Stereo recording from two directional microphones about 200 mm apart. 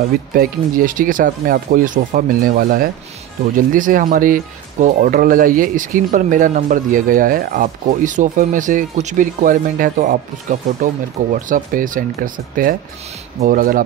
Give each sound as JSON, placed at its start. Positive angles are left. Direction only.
{"t": 0.3, "sound": "speech", "side_deg": -45}